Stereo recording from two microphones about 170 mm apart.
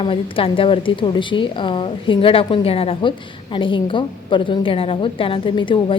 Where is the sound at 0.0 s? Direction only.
30° left (ahead or behind).